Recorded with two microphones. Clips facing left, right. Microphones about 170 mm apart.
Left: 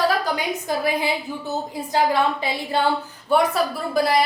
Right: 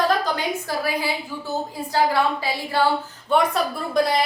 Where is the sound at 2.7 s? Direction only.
20° left (ahead or behind).